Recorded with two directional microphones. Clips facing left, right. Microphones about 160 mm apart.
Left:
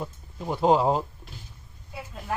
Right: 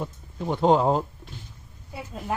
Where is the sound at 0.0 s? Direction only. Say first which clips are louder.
Right 3 dB; centre (ahead or behind).